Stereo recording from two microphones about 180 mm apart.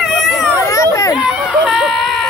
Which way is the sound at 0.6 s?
15° left (ahead or behind).